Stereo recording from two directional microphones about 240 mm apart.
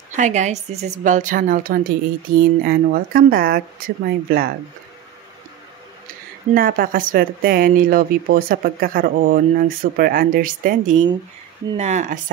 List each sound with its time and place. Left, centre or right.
0.1 s speech: right
6.5 s speech: right